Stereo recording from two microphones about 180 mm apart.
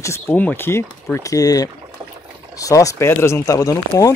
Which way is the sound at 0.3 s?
10° left (ahead or behind).